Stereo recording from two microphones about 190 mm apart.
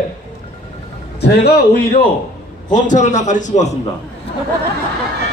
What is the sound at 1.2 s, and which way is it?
Speech, 60° left (ahead or behind).